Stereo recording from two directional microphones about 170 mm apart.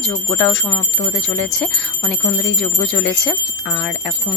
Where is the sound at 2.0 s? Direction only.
20° left (ahead or behind).